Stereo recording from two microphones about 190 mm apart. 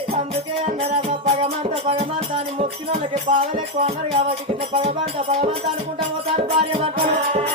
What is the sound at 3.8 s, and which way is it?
Music, 30° right (ahead or behind).